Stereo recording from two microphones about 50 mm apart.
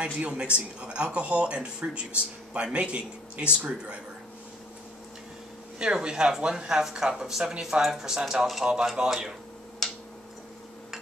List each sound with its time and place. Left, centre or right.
0.0 s speech: centre
5.8 s speech: centre
9.0 s speech: centre
9.8 s tick-tock: centre